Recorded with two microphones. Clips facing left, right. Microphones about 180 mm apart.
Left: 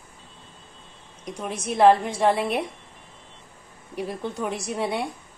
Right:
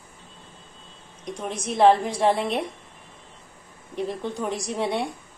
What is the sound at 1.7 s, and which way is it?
Speech, centre (ahead or behind).